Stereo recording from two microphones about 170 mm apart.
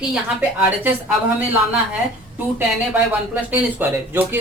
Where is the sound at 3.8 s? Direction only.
10° right (ahead or behind).